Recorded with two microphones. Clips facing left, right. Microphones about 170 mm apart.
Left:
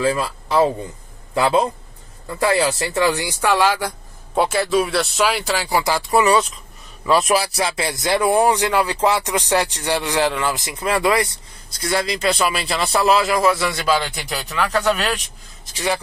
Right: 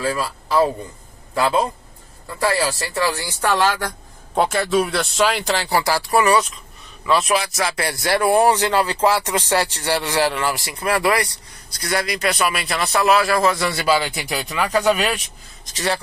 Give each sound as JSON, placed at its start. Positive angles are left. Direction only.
{"t": 0.0, "sound": "a man's voice", "side_deg": 20}
{"t": 7.2, "sound": "speech", "side_deg": 35}
{"t": 7.6, "sound": "speech", "side_deg": 20}
{"t": 13.3, "sound": "speech", "side_deg": 10}
{"t": 15.6, "sound": "speech", "side_deg": 10}